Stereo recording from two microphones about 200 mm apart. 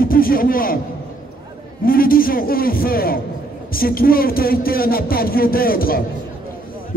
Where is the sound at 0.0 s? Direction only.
45° left (ahead or behind).